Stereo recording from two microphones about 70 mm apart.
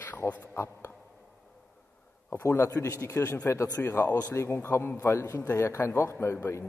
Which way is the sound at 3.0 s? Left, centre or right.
Left.